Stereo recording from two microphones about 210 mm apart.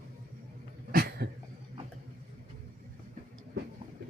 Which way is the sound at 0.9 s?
45° right (ahead or behind).